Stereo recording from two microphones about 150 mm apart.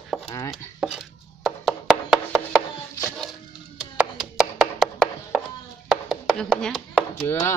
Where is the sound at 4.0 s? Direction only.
5° right (ahead or behind).